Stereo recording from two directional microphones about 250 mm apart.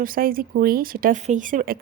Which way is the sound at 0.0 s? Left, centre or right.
Right.